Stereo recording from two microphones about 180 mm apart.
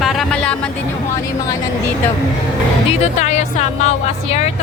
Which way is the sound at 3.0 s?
40° left (ahead or behind).